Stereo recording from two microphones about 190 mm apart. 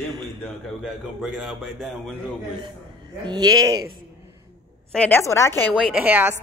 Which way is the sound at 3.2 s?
20° right (ahead or behind).